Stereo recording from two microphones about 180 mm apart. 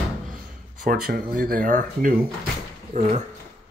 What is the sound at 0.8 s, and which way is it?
Speech, 55° right (ahead or behind).